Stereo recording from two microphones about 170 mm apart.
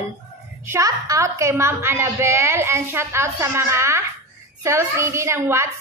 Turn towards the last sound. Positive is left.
turn(degrees=-15)  # may be behind; listen again after turning